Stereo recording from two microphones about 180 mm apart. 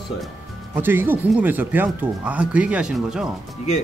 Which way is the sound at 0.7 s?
10° right (ahead or behind).